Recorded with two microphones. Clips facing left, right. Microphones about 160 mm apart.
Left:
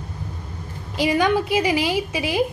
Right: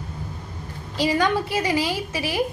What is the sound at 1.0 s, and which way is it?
A woman's voice, 15° left (ahead or behind).